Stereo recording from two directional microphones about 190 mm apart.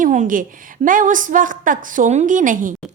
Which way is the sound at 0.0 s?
40° right (ahead or behind).